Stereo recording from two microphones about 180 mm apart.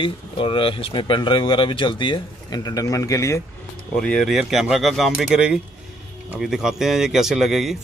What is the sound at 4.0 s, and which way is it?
Speech, 5° left (ahead or behind).